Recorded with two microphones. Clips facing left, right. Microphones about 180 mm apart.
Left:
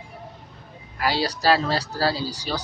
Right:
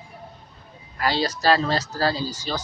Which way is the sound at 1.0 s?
10° left (ahead or behind).